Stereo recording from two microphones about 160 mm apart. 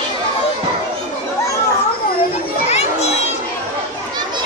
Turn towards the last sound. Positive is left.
turn(degrees=40)  # may be behind; listen again after turning